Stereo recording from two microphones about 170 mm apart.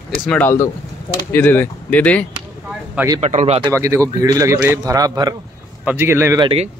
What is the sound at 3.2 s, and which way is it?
Speech, 45° right (ahead or behind).